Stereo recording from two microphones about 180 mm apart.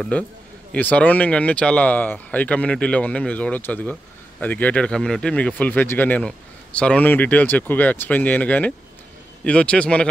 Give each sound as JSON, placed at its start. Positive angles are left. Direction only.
{"t": 0.1, "sound": "speech", "side_deg": 10}